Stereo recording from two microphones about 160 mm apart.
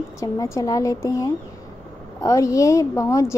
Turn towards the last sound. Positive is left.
turn(degrees=20)  # may be behind; listen again after turning